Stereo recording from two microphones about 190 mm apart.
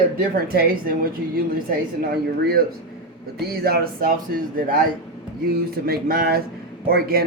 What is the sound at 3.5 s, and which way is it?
Speech, 55° right (ahead or behind).